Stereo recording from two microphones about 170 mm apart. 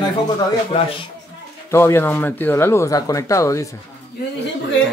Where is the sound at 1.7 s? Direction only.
15° left (ahead or behind).